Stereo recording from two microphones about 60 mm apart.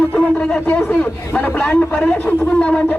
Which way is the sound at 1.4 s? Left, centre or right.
Left.